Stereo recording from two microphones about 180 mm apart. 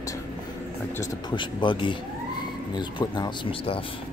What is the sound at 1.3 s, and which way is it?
Speech, 25° left (ahead or behind).